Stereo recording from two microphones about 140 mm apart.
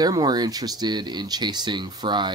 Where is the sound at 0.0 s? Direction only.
30° right (ahead or behind).